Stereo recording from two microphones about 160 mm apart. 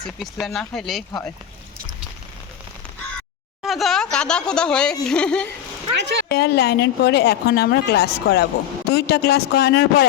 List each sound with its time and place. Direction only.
0.2 s speech: centre (ahead or behind)
3.6 s speech: centre (ahead or behind)
5.9 s speech: 90° right
6.2 s speech: 90° left